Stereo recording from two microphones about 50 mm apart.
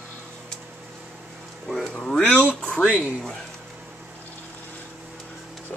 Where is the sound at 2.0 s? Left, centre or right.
Centre.